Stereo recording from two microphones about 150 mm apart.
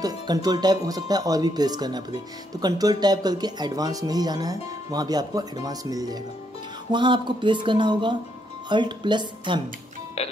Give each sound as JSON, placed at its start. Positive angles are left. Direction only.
{"t": 0.0, "sound": "speech", "side_deg": -25}